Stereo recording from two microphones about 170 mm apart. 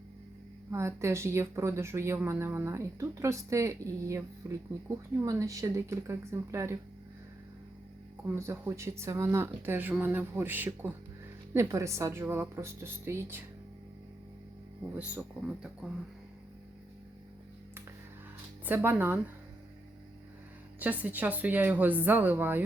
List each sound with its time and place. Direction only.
0.7 s speech: 15° right (ahead or behind)
8.4 s speech: 15° right (ahead or behind)
14.9 s speech: 5° right (ahead or behind)
18.6 s speech: 10° right (ahead or behind)
20.7 s speech: 10° right (ahead or behind)